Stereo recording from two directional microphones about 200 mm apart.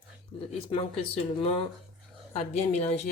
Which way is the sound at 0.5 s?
25° left (ahead or behind).